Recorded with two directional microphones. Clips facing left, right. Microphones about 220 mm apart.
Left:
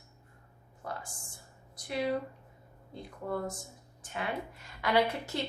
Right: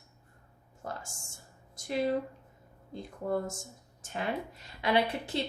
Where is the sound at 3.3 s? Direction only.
25° right (ahead or behind).